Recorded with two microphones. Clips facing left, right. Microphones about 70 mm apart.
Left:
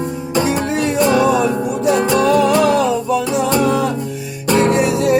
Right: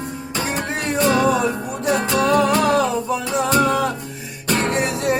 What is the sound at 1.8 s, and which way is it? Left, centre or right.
Music, right.